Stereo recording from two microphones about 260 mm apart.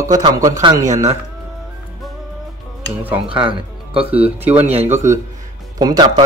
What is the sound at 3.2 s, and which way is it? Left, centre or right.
Speech, centre.